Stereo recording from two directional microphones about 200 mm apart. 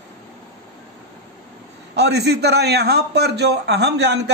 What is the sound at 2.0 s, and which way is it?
A man's voice, 55° right (ahead or behind).